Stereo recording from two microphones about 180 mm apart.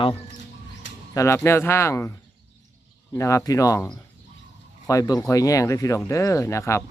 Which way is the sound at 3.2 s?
15° left (ahead or behind).